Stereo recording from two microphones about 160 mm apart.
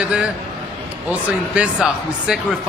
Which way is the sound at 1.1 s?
10° right (ahead or behind).